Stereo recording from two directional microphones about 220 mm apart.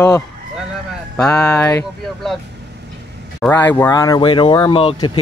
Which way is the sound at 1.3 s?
15° left (ahead or behind).